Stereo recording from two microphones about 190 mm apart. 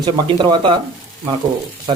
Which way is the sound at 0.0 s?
25° right (ahead or behind).